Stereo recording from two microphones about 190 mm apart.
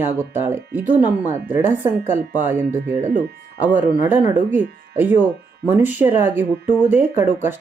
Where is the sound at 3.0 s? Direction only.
40° right (ahead or behind).